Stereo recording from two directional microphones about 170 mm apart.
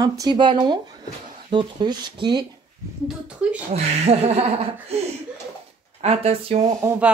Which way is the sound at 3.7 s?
40° right (ahead or behind).